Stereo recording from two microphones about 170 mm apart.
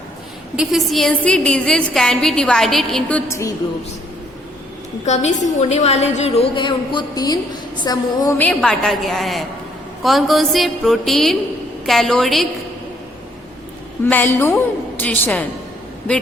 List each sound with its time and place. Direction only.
0.5 s a woman's voice: 5° right (ahead or behind); by 3.5 s 15° left (ahead or behind)
5.0 s a woman's voice: 40° left (ahead or behind); by 7.3 s 25° left (ahead or behind)
7.9 s a sound: 20° left (ahead or behind)
8.4 s a woman's voice: 5° left (ahead or behind)
14.0 s a woman's voice: 10° left (ahead or behind)